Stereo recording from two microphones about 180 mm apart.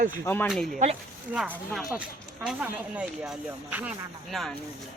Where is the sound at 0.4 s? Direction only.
Centre (ahead or behind).